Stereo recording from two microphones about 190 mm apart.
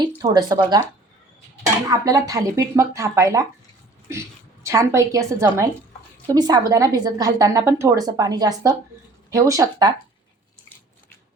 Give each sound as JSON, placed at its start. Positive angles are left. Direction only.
{"t": 0.2, "sound": "a woman's voice", "side_deg": -20}
{"t": 1.9, "sound": "a woman's voice", "side_deg": -20}